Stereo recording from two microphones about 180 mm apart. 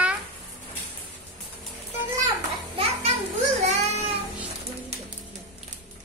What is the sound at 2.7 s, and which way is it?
Children playing, 35° right (ahead or behind).